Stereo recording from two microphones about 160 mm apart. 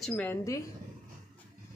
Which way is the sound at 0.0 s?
10° left (ahead or behind).